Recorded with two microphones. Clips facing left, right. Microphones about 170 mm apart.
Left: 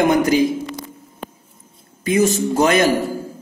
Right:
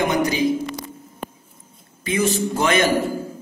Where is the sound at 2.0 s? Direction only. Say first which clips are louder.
Left 4 dB; 40° left (ahead or behind).